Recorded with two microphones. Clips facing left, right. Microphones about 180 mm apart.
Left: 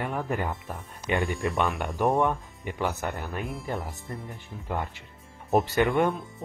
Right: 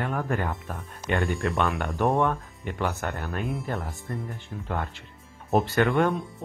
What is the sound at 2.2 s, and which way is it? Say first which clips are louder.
Speech: even; 15° left (ahead or behind).